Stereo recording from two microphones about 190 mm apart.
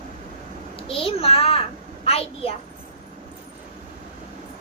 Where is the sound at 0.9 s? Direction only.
30° left (ahead or behind).